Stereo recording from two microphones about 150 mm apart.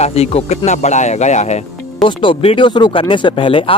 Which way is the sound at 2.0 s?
35° left (ahead or behind).